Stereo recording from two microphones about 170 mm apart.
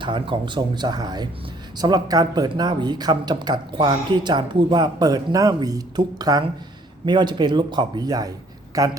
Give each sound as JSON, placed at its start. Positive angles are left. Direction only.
{"t": 0.0, "sound": "speech", "side_deg": -30}